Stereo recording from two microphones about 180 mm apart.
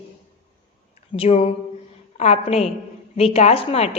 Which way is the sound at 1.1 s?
35° left (ahead or behind).